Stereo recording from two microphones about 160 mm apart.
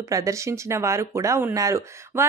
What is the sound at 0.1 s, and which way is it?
Speech, 20° right (ahead or behind).